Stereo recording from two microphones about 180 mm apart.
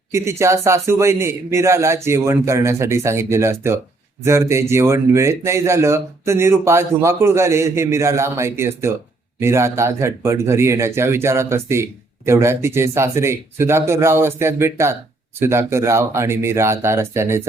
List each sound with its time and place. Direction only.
0.1 s speech: 15° right (ahead or behind)